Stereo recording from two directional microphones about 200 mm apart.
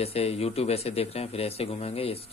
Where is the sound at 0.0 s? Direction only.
30° left (ahead or behind).